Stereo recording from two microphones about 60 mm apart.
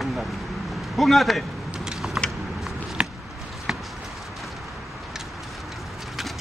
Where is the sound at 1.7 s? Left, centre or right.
Centre.